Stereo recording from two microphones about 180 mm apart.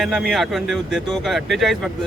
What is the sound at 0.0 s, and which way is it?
Speech, centre (ahead or behind).